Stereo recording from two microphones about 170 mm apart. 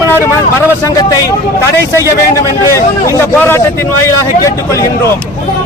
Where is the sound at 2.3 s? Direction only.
15° left (ahead or behind).